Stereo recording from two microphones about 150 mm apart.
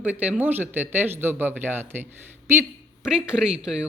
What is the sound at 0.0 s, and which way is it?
Speech, 10° right (ahead or behind).